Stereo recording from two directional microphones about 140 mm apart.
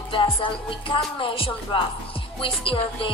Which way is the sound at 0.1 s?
40° left (ahead or behind).